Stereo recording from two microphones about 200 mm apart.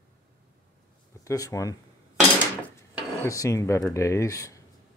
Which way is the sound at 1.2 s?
15° left (ahead or behind).